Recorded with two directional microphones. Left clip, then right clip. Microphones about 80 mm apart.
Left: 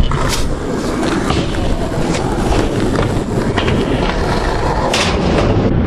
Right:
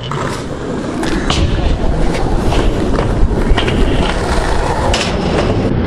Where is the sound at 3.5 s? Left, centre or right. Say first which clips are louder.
Right 1 dB; right.